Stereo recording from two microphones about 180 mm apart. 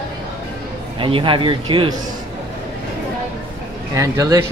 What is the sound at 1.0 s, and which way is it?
Speech, 30° right (ahead or behind).